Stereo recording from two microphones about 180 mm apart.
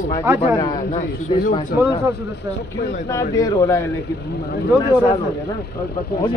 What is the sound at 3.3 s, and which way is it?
Speech, 15° left (ahead or behind).